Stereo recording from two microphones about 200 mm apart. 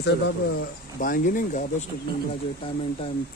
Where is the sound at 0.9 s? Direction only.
45° left (ahead or behind).